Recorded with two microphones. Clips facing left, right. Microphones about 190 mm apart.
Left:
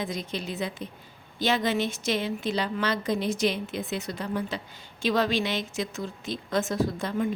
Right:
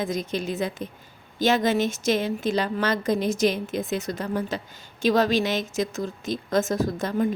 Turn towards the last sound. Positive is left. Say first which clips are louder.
# right 3 dB
turn(degrees=-40)  # may be behind; listen again after turning